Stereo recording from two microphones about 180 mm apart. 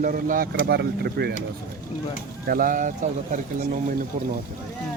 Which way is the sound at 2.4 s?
50° right (ahead or behind).